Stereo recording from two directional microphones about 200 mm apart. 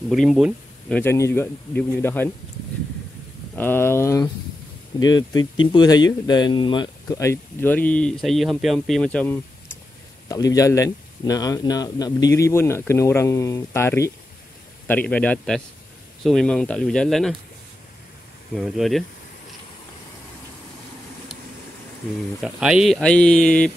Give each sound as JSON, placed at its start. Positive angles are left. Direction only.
{"t": 0.1, "sound": "speech", "side_deg": 0}
{"t": 3.5, "sound": "speech", "side_deg": 10}
{"t": 10.2, "sound": "speech", "side_deg": 15}
{"t": 18.5, "sound": "speech", "side_deg": 0}
{"t": 22.4, "sound": "speech", "side_deg": -5}